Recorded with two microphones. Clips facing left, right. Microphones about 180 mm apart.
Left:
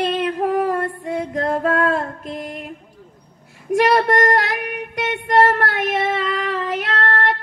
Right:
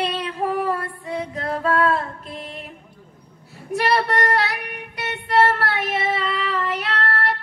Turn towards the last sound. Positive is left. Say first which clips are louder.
# left 3 dB
turn(degrees=50)  # may be behind; listen again after turning